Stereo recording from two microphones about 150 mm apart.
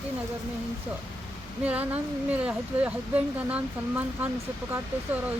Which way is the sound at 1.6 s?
10° right (ahead or behind).